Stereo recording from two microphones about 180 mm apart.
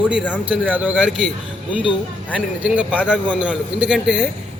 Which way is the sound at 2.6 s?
5° right (ahead or behind).